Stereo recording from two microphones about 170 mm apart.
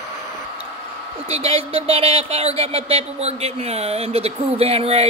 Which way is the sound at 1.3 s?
35° right (ahead or behind).